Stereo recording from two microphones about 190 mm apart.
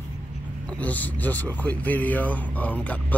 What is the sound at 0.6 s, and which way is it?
Speech, 5° left (ahead or behind).